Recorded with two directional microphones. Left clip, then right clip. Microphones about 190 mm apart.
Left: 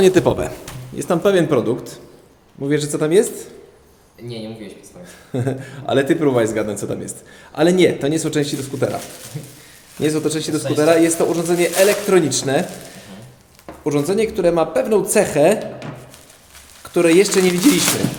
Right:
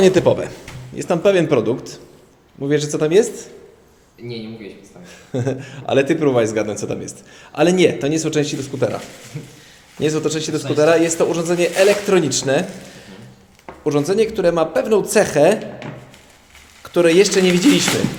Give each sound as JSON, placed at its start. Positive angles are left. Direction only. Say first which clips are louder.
{"t": 0.0, "sound": "speech", "louder": "right 1 dB", "side_deg": 25}
{"t": 0.9, "sound": "a man's voice", "louder": "right 1 dB", "side_deg": 10}
{"t": 5.0, "sound": "a man's voice", "louder": "right 1 dB", "side_deg": 10}
{"t": 10.0, "sound": "a man's voice", "louder": "even", "side_deg": 5}
{"t": 13.8, "sound": "speech", "louder": "right 1 dB", "side_deg": 5}
{"t": 16.8, "sound": "a man's voice", "louder": "right 1 dB", "side_deg": 10}